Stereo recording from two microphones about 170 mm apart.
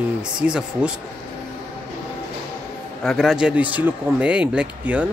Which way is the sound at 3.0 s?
Centre (ahead or behind).